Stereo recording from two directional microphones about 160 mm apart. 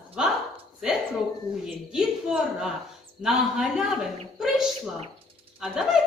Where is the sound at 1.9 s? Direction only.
5° right (ahead or behind).